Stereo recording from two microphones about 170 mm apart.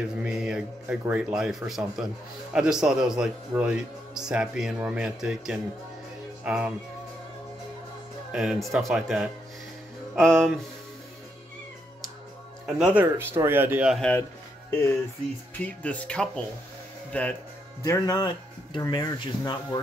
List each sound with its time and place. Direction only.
0.2 s a man's voice: 5° right (ahead or behind)
8.3 s a man's voice: 5° right (ahead or behind)
12.6 s speech: 5° right (ahead or behind)
15.5 s speech: 10° left (ahead or behind)
17.8 s speech: 20° left (ahead or behind)